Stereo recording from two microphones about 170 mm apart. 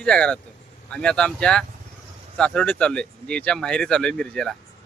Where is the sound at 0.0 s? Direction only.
5° left (ahead or behind).